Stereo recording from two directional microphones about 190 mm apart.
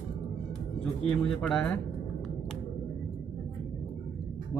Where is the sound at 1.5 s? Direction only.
5° left (ahead or behind).